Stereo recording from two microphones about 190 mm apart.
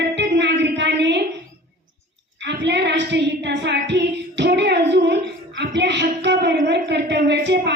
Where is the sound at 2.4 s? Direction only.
65° right (ahead or behind).